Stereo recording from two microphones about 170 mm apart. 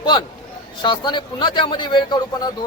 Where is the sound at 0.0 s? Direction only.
30° left (ahead or behind).